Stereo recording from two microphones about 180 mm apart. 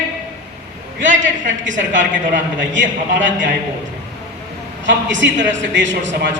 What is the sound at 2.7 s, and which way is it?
Speech, 90° right.